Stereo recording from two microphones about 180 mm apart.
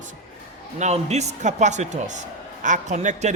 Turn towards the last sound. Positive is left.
turn(degrees=-40)  # may be behind; listen again after turning